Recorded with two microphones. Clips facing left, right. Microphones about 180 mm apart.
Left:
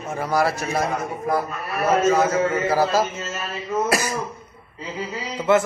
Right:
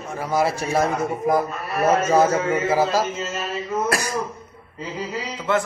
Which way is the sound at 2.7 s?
15° right (ahead or behind).